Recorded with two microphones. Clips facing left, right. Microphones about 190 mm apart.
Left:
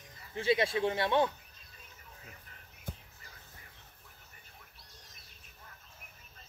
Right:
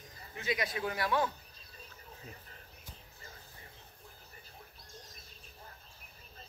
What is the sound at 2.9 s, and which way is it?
Music, 55° left (ahead or behind).